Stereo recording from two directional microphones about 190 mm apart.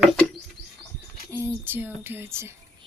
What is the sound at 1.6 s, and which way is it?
Speech, 10° right (ahead or behind).